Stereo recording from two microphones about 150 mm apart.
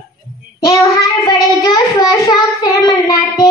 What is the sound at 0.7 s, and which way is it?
Child singing, 25° left (ahead or behind).